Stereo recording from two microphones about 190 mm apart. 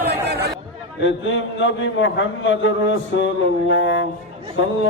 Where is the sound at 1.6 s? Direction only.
75° left (ahead or behind).